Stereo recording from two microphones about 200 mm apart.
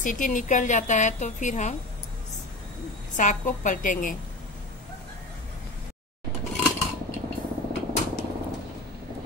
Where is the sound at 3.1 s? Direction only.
40° left (ahead or behind).